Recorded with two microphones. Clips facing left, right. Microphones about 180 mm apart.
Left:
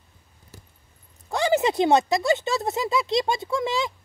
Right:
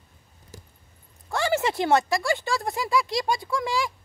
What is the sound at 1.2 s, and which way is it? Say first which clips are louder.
Speech: left 3 dB; 20° left (ahead or behind).